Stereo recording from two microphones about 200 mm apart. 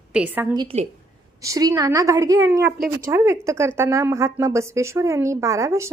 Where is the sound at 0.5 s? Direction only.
20° right (ahead or behind).